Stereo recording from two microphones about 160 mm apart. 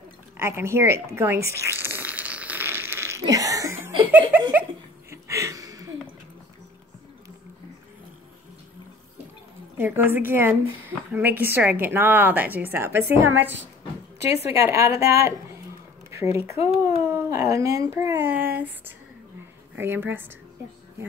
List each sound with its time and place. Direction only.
0.4 s zipper: 15° right (ahead or behind)
4.1 s speech: 10° right (ahead or behind)
5.1 s a sound: 20° right (ahead or behind)
9.8 s speech: 15° right (ahead or behind)
16.6 s speech: 15° right (ahead or behind)